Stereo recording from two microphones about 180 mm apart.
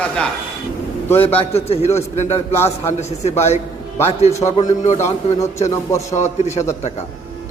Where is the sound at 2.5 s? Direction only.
15° left (ahead or behind).